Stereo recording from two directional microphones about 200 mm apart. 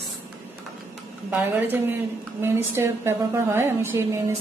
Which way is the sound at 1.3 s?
10° right (ahead or behind).